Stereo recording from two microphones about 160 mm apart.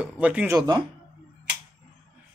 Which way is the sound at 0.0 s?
10° right (ahead or behind).